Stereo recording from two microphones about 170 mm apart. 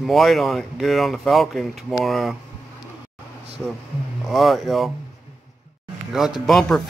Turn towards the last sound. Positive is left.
turn(degrees=0)  # may be behind; listen again after turning